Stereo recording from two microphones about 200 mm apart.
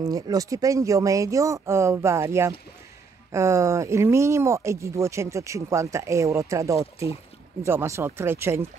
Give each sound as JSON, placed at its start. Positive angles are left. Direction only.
{"t": 0.0, "sound": "speech", "side_deg": -20}